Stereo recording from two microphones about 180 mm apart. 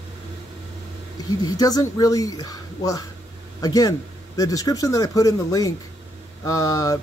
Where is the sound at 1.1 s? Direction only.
20° left (ahead or behind).